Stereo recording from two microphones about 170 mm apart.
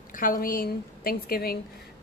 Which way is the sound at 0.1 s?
55° left (ahead or behind).